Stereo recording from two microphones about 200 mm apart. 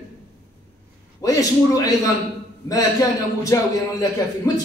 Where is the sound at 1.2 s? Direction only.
15° left (ahead or behind).